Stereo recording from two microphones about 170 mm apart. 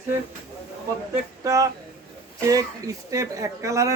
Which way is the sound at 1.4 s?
20° right (ahead or behind).